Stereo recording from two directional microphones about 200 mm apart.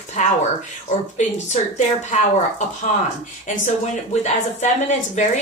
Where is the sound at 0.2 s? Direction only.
35° left (ahead or behind).